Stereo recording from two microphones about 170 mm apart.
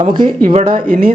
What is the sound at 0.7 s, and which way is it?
Speech, 55° right (ahead or behind).